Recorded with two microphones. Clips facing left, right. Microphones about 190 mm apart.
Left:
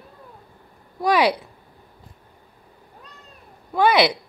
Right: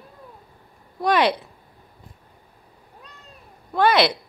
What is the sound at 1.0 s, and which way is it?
Speech, 10° left (ahead or behind).